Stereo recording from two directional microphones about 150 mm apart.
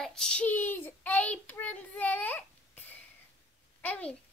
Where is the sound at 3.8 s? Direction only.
10° left (ahead or behind).